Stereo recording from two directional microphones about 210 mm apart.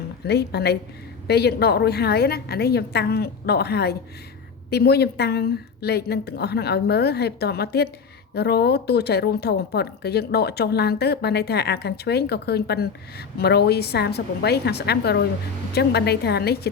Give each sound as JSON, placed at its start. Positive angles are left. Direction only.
{"t": 0.3, "sound": "speech", "side_deg": 50}